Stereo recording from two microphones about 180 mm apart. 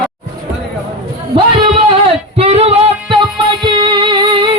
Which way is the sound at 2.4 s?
35° right (ahead or behind).